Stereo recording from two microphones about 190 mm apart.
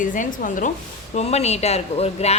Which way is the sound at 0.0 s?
45° left (ahead or behind).